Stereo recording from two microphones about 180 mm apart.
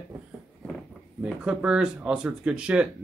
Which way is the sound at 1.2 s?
5° right (ahead or behind).